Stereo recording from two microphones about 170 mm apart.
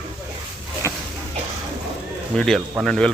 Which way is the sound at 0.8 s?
15° left (ahead or behind).